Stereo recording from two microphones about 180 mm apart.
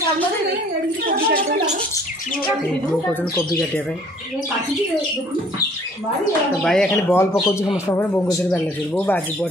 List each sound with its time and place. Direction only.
1.0 s a sound: 55° right (ahead or behind)
3.3 s speech: 10° left (ahead or behind)
6.6 s speech: 5° left (ahead or behind)
7.3 s speech: 25° left (ahead or behind)